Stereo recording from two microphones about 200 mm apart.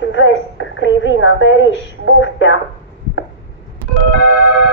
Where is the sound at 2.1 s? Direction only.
70° left (ahead or behind).